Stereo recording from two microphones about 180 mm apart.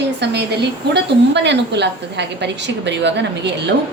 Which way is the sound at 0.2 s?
70° right (ahead or behind).